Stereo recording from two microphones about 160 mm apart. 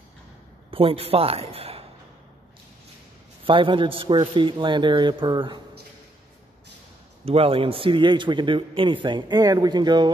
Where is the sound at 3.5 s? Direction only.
30° right (ahead or behind).